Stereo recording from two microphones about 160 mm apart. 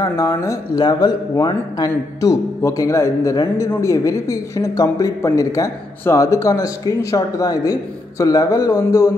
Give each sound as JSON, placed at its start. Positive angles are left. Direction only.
{"t": 0.0, "sound": "speech", "side_deg": 20}